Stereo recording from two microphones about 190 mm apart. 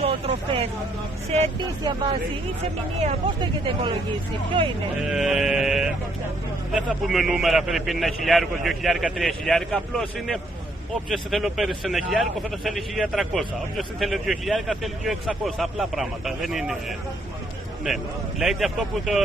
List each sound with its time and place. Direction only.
0.0 s vehicle: 30° right (ahead or behind)
1.3 s speech: 35° right (ahead or behind)
5.0 s a man's voice: centre (ahead or behind)
18.4 s a man's voice: centre (ahead or behind)